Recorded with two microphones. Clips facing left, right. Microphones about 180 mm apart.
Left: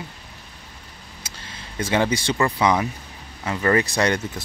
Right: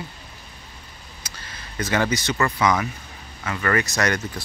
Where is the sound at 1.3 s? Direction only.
25° left (ahead or behind).